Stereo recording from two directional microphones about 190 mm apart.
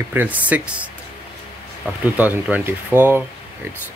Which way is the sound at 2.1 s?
10° right (ahead or behind).